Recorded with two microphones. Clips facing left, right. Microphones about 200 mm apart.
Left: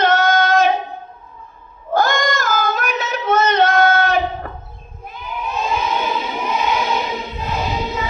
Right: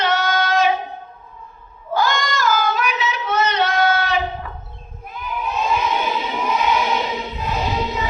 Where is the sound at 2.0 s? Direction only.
50° left (ahead or behind).